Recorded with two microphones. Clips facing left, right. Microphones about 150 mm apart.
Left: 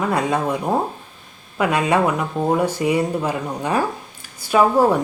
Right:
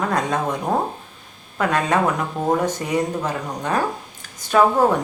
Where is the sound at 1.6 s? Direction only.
10° left (ahead or behind).